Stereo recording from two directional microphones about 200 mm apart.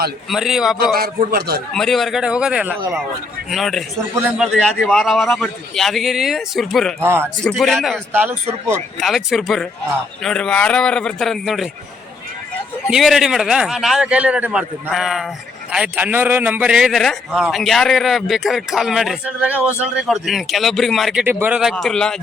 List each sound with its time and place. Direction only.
0.3 s a man's voice: centre (ahead or behind)
0.9 s a man's voice: 45° right (ahead or behind)
1.7 s a man's voice: centre (ahead or behind)
7.0 s a man's voice: 10° right (ahead or behind)
7.4 s a man's voice: centre (ahead or behind)
9.0 s a man's voice: centre (ahead or behind)
12.9 s a man's voice: centre (ahead or behind)